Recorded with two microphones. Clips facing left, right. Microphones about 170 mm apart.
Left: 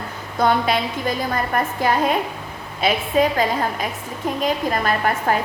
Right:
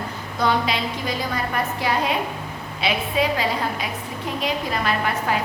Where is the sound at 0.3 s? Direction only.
50° left (ahead or behind).